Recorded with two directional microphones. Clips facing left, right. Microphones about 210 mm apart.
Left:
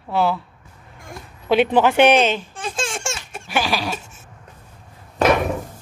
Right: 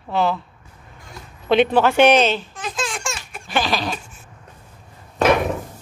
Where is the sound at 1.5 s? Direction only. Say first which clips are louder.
Even; 10° left (ahead or behind).